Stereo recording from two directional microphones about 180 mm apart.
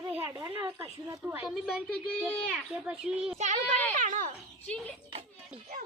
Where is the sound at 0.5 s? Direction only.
20° right (ahead or behind); by 1.7 s 5° right (ahead or behind).